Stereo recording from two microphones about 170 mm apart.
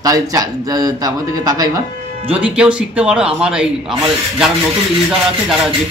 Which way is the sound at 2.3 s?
5° right (ahead or behind).